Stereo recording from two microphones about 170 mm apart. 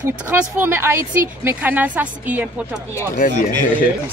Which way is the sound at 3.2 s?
55° left (ahead or behind).